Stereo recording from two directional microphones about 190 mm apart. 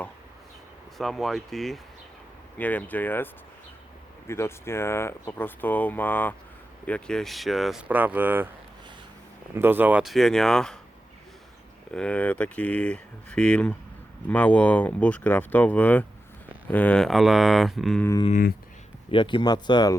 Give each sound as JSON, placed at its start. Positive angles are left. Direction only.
{"t": 0.9, "sound": "speech", "side_deg": 0}
{"t": 4.3, "sound": "speech", "side_deg": 15}
{"t": 9.6, "sound": "speech", "side_deg": -10}
{"t": 11.9, "sound": "speech", "side_deg": 5}
{"t": 19.1, "sound": "speech", "side_deg": 25}